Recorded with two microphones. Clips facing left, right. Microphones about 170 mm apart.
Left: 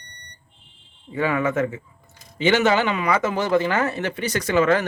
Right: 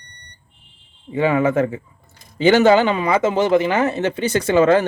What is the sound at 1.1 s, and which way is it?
A man's voice, 25° right (ahead or behind).